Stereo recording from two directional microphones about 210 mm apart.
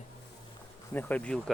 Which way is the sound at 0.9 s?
10° left (ahead or behind).